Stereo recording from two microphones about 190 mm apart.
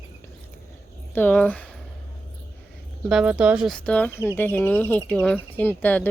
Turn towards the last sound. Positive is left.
turn(degrees=10)  # may be behind; listen again after turning